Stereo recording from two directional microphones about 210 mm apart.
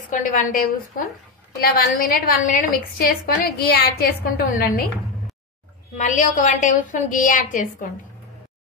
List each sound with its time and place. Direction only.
0.1 s a woman's voice: 40° left (ahead or behind)
5.9 s a woman's voice: 35° left (ahead or behind)